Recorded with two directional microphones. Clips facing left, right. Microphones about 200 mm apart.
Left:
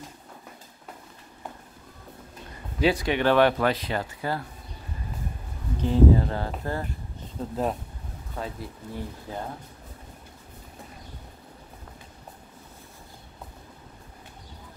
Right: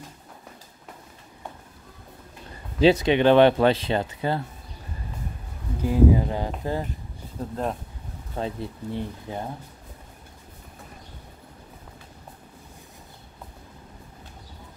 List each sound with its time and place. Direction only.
2.8 s speech: 25° right (ahead or behind)
5.8 s speech: 10° right (ahead or behind)
7.3 s speech: 5° left (ahead or behind)
8.4 s speech: 25° right (ahead or behind)